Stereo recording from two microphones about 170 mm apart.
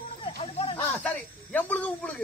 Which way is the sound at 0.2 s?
35° left (ahead or behind).